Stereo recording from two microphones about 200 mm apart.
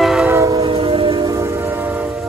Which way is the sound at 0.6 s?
30° right (ahead or behind).